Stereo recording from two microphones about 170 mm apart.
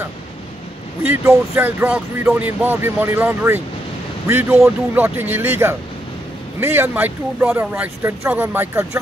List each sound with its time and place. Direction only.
1.0 s speech: 15° right (ahead or behind)